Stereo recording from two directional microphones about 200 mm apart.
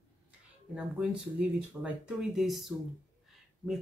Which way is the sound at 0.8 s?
5° right (ahead or behind).